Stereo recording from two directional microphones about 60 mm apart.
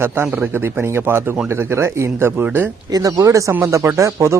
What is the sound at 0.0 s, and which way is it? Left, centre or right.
A man's voice, right.